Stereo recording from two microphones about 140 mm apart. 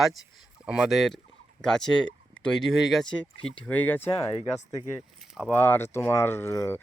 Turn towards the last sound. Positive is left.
turn(degrees=20)  # may be behind; listen again after turning